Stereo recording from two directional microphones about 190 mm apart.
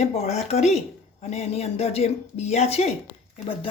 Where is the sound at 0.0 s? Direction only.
35° left (ahead or behind).